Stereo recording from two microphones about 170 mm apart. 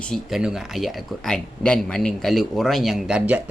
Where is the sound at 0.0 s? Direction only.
Centre (ahead or behind).